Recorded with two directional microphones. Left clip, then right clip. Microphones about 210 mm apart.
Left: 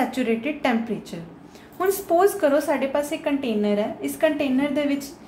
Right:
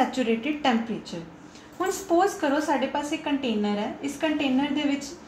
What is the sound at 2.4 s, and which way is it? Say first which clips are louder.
A woman's voice: left 4 dB; 25° left (ahead or behind).